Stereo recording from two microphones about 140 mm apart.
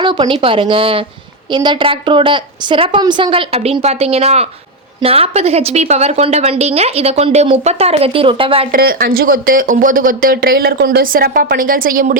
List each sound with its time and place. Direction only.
0.0 s a woman's voice: 35° right (ahead or behind)
8.7 s speech: 90° right